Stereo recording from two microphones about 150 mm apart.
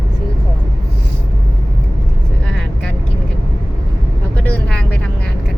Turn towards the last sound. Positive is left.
turn(degrees=10)  # may be behind; listen again after turning